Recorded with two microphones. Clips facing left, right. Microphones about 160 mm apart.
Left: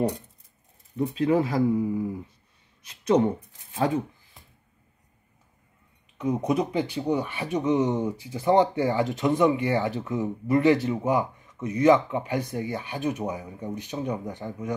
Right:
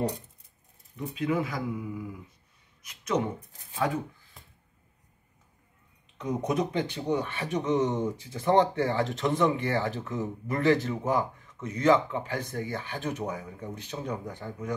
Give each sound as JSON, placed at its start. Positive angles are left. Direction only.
{"t": 0.9, "sound": "speech", "side_deg": 35}
{"t": 6.1, "sound": "speech", "side_deg": 5}